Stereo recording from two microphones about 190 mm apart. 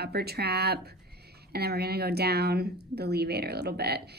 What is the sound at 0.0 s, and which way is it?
Speech, 55° right (ahead or behind).